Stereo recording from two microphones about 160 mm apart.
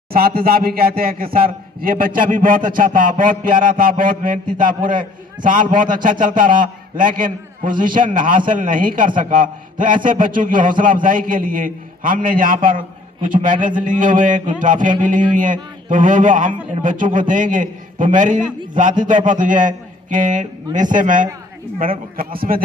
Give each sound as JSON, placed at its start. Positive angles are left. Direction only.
{"t": 0.1, "sound": "a man's voice", "side_deg": -70}